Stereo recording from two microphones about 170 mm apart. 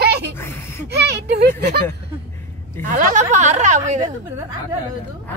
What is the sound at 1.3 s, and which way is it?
Speech, 70° right (ahead or behind).